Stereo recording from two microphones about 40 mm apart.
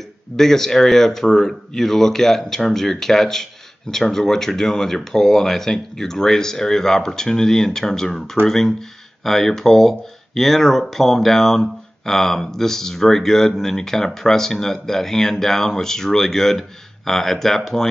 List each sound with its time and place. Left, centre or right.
0.4 s speech: centre